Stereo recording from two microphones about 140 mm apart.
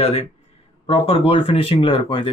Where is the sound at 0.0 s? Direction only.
45° left (ahead or behind).